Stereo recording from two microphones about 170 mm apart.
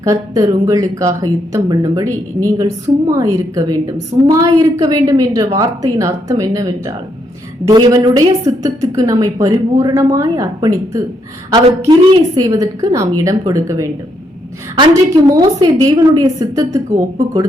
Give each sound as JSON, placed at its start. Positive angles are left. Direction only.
{"t": 0.0, "sound": "speech", "side_deg": -20}